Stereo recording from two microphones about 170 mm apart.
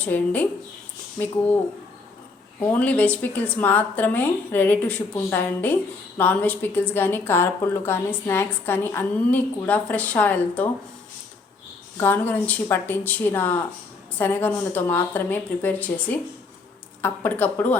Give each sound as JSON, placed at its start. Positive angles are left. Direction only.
{"t": 0.0, "sound": "a woman's voice", "side_deg": 10}
{"t": 2.6, "sound": "a woman's voice", "side_deg": 10}
{"t": 11.9, "sound": "a woman's voice", "side_deg": 15}